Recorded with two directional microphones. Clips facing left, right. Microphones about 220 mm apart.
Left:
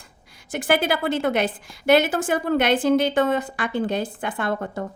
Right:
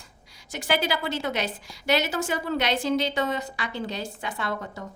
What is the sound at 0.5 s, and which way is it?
A woman's voice, 50° left (ahead or behind).